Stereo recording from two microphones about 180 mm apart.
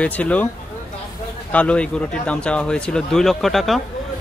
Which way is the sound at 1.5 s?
5° left (ahead or behind).